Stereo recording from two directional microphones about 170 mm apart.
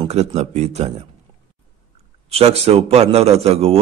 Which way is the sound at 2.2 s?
40° right (ahead or behind).